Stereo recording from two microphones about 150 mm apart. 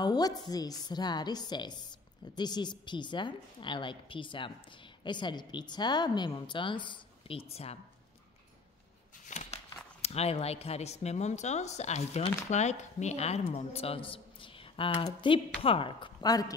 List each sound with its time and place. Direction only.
0.0 s a woman's voice: 25° left (ahead or behind); by 7.8 s 40° left (ahead or behind)
9.2 s a sound: 50° left (ahead or behind)
10.0 s a woman's voice: 45° left (ahead or behind); by 16.5 s 25° left (ahead or behind)